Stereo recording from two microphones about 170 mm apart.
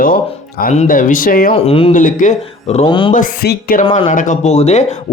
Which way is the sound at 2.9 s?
30° left (ahead or behind).